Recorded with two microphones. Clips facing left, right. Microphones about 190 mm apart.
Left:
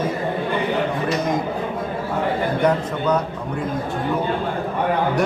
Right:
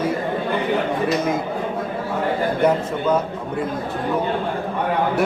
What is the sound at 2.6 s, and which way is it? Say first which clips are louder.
Speech: right 1 dB; 5° right (ahead or behind).